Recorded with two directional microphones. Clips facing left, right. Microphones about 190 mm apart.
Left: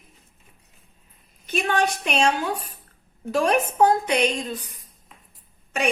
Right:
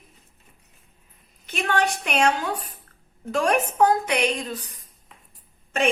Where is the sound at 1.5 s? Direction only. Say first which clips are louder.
Left 1 dB; 20° left (ahead or behind).